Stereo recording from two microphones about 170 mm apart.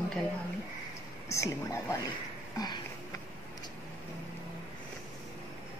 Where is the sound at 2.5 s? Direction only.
25° left (ahead or behind).